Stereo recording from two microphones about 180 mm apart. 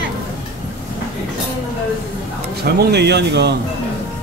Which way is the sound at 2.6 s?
65° right (ahead or behind).